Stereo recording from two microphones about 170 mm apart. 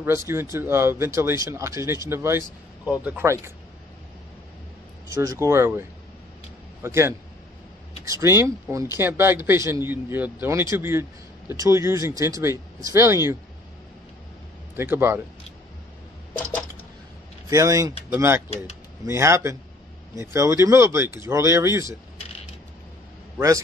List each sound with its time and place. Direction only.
0.3 s speech: 15° right (ahead or behind)
5.1 s speech: 20° right (ahead or behind)
14.8 s speech: 15° right (ahead or behind)
17.5 s speech: 20° right (ahead or behind)